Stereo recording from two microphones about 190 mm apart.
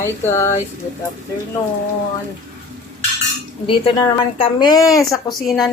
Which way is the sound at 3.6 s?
25° left (ahead or behind).